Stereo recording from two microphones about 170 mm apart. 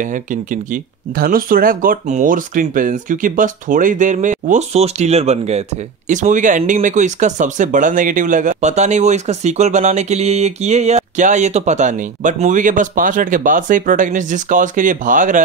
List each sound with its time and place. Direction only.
0.0 s speech: 50° right (ahead or behind)